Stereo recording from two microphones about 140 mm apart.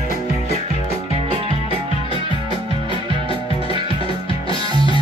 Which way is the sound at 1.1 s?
40° right (ahead or behind).